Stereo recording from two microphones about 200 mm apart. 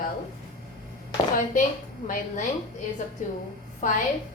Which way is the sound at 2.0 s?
40° left (ahead or behind).